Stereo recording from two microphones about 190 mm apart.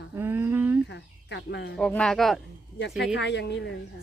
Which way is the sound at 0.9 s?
65° left (ahead or behind).